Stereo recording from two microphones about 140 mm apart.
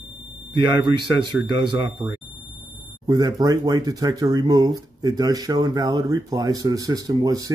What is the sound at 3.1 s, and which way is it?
Speech, 25° right (ahead or behind).